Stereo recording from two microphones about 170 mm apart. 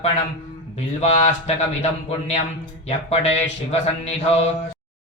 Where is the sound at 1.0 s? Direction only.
40° left (ahead or behind).